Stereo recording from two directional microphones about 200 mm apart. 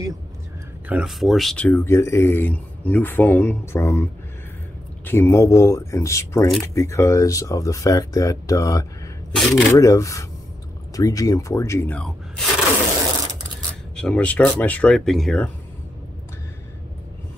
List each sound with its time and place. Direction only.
0.8 s speech: 5° right (ahead or behind); by 8.8 s 15° left (ahead or behind)
9.3 s speech: centre (ahead or behind)
9.8 s speech: 15° left (ahead or behind)
13.9 s speech: 5° left (ahead or behind)